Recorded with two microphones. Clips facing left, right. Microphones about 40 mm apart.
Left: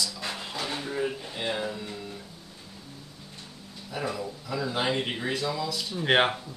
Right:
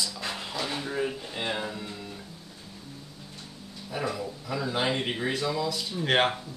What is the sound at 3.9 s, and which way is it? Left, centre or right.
Speech, centre.